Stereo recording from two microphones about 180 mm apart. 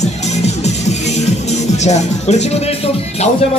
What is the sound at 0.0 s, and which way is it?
Music, 40° left (ahead or behind).